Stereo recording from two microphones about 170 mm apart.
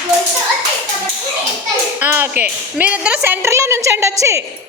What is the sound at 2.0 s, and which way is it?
Speech, 15° right (ahead or behind).